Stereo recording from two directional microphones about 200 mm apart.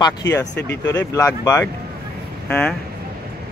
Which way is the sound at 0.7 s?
10° left (ahead or behind).